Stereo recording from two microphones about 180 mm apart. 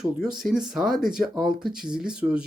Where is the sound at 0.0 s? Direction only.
5° right (ahead or behind).